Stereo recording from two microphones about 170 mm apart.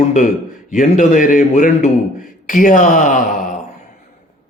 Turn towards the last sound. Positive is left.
turn(degrees=50)  # may be behind; listen again after turning